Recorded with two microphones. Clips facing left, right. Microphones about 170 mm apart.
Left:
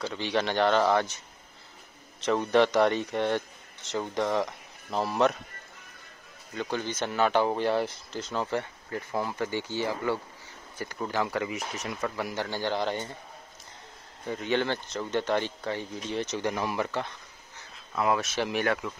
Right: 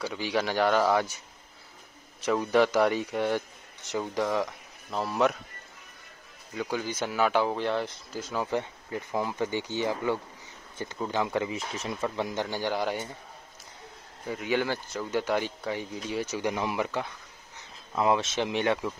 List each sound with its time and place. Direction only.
0.0 s speech: 10° right (ahead or behind)
2.1 s a man's voice: 5° right (ahead or behind)
6.5 s speech: 10° right (ahead or behind)
8.1 s speech: 10° right (ahead or behind); by 12.3 s 25° right (ahead or behind)
12.4 s speech: 15° right (ahead or behind)
14.2 s speech: 5° right (ahead or behind)
17.9 s speech: 25° right (ahead or behind)